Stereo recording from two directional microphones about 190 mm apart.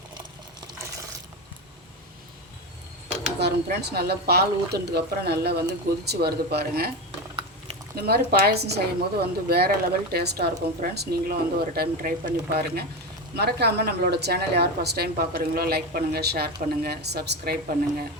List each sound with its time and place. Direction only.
3.4 s a woman's voice: 60° right (ahead or behind)
7.9 s a woman's voice: 55° right (ahead or behind)